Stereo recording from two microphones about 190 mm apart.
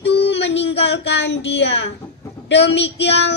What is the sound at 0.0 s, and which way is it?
Child singing, 65° left (ahead or behind).